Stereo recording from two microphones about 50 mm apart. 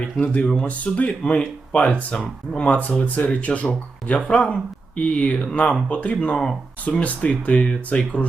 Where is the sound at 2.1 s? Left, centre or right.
Centre.